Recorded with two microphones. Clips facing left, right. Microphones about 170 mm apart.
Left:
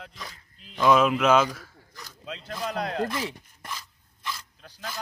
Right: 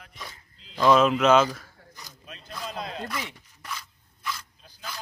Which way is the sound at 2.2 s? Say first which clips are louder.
Left 5 dB; 85° left.